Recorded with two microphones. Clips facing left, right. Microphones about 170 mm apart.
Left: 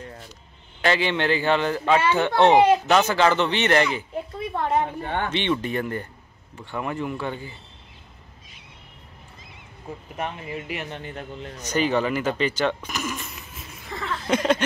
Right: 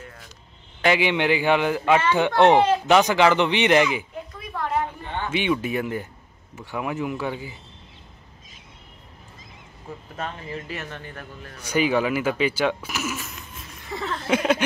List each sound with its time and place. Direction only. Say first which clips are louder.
0.8 s a man's voice: right 2 dB; 15° right (ahead or behind)
2.5 s speech: left 2 dB; 15° left (ahead or behind)
2.9 s a man's voice: right 2 dB; 15° right (ahead or behind)
4.3 s a sound: left 3 dB; 25° left (ahead or behind)
5.0 s speech: left 3 dB; 55° left (ahead or behind)
5.3 s a man's voice: right 5 dB; 5° right (ahead or behind)
10.1 s a man's voice: left 1 dB; 15° left (ahead or behind)
11.6 s a man's voice: right 1 dB; 10° right (ahead or behind)